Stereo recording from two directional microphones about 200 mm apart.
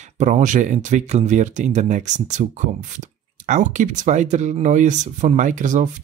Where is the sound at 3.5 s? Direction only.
40° right (ahead or behind).